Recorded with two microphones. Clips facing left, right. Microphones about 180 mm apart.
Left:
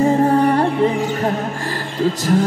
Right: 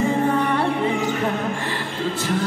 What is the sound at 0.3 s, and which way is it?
Music, 35° left (ahead or behind).